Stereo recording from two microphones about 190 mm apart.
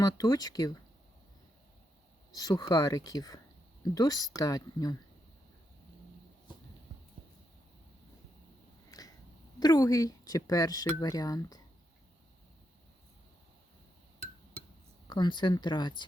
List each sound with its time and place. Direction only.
0.0 s speech: 20° left (ahead or behind)
2.3 s speech: 20° left (ahead or behind)
8.9 s a sound: 20° left (ahead or behind)
9.6 s speech: 20° left (ahead or behind)
15.0 s speech: 20° left (ahead or behind)